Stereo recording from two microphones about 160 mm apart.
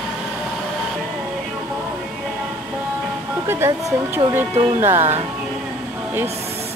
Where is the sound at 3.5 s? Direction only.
15° right (ahead or behind).